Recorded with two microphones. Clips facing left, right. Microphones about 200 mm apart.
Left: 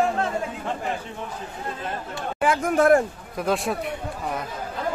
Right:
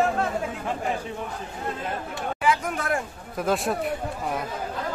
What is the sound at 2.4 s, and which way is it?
Speech, 50° left (ahead or behind).